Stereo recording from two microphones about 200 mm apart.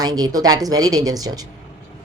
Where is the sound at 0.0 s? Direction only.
20° right (ahead or behind).